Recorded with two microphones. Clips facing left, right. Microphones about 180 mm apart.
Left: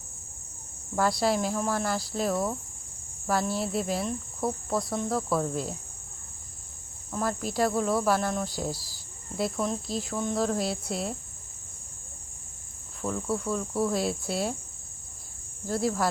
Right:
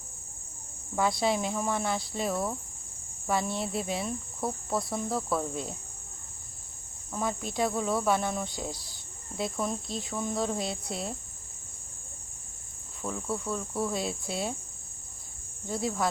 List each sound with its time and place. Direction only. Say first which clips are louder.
0.9 s cricket: left 2 dB; centre (ahead or behind)
7.1 s cricket: left 2 dB; centre (ahead or behind)
13.0 s cricket: left 4 dB; centre (ahead or behind)
15.6 s cricket: left 3 dB; centre (ahead or behind)